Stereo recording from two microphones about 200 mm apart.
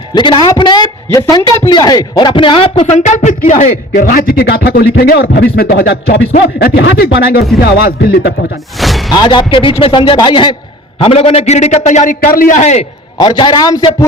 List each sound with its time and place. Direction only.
0.1 s a man's voice: 20° left (ahead or behind)
3.0 s a man's voice: 35° left (ahead or behind)
8.8 s speech: centre (ahead or behind)
9.1 s a man's voice: 20° left (ahead or behind)
13.1 s a man's voice: 20° left (ahead or behind)